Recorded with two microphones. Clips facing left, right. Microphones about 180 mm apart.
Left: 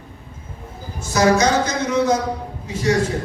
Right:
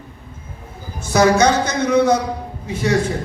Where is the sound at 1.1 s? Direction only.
60° right (ahead or behind).